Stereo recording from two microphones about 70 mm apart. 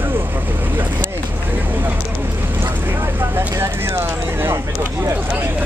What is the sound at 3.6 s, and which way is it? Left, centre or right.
Speech, right.